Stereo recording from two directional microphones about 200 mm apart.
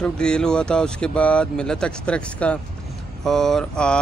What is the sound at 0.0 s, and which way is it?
Speech, 5° left (ahead or behind).